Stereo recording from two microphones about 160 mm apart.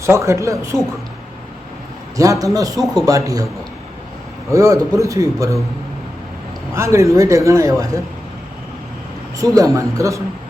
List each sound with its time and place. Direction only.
0.0 s speech: 20° right (ahead or behind)
2.1 s speech: 20° right (ahead or behind)
4.5 s speech: 20° right (ahead or behind)
6.7 s speech: 20° right (ahead or behind)
9.4 s speech: 20° right (ahead or behind)